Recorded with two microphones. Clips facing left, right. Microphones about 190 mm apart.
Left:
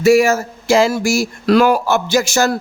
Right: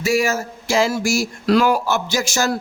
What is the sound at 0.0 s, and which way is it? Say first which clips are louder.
Speech: left 8 dB; 60° left (ahead or behind).